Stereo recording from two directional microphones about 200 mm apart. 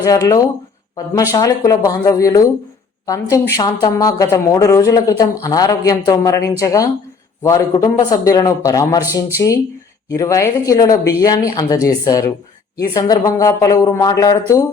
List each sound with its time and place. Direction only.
0.0 s a woman's voice: 15° left (ahead or behind)